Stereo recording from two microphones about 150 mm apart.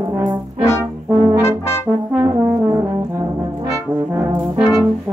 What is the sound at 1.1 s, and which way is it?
Brass instrument, 25° right (ahead or behind).